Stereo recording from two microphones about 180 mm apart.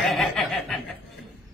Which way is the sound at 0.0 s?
Centre (ahead or behind).